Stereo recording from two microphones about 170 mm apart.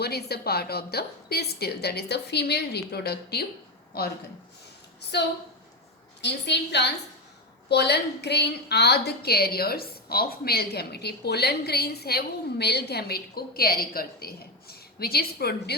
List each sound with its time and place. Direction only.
0.0 s a woman's voice: 70° left (ahead or behind)
5.1 s a woman's voice: 80° left